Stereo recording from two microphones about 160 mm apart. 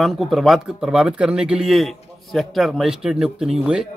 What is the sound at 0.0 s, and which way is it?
Speech, centre (ahead or behind).